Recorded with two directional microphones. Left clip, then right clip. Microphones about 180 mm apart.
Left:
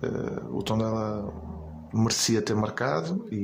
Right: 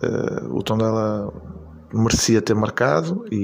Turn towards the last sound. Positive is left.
turn(degrees=-30)  # may be behind; listen again after turning